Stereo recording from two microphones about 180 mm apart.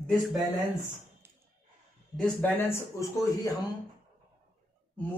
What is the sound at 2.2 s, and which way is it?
A man's voice, 10° left (ahead or behind).